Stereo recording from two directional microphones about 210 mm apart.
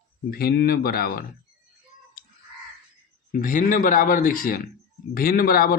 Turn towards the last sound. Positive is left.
turn(degrees=45)  # may be behind; listen again after turning